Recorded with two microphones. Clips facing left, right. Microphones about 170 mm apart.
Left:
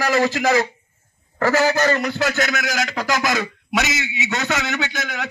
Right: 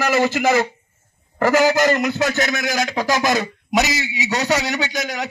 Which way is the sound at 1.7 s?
20° right (ahead or behind).